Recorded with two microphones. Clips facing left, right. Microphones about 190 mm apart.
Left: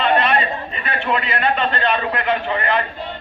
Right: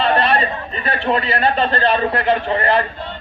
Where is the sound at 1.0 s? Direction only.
35° right (ahead or behind).